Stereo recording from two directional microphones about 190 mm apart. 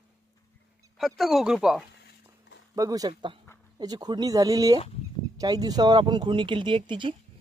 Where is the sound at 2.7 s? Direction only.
20° right (ahead or behind).